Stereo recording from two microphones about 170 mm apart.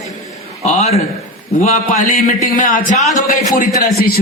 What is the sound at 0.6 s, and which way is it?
A man's voice, 40° left (ahead or behind).